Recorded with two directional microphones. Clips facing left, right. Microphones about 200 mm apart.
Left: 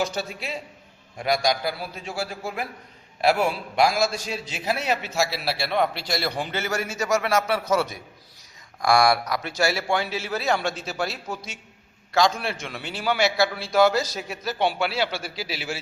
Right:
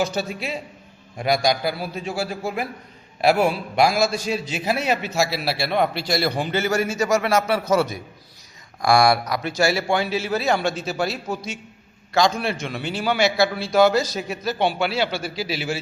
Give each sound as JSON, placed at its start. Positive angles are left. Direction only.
{"t": 0.0, "sound": "a man's voice", "side_deg": -5}
{"t": 12.1, "sound": "a man's voice", "side_deg": 5}